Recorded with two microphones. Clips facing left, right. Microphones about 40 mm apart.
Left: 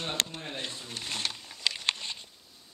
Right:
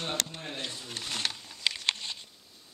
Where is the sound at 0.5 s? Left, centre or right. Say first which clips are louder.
Even; centre.